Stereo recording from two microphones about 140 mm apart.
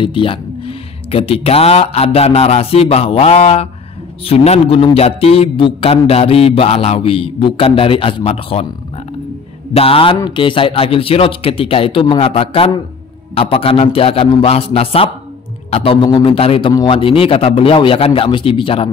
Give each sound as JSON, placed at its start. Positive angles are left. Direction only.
{"t": 0.0, "sound": "a man's voice", "side_deg": 40}
{"t": 9.8, "sound": "a man's voice", "side_deg": 40}